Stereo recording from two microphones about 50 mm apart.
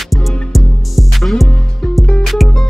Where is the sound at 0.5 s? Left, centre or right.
Centre.